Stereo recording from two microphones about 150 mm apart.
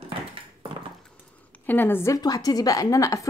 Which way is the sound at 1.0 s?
10° left (ahead or behind).